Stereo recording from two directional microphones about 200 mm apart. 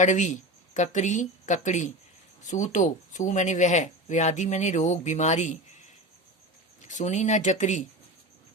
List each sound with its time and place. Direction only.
0.0 s speech: 35° left (ahead or behind)
6.8 s speech: 35° left (ahead or behind)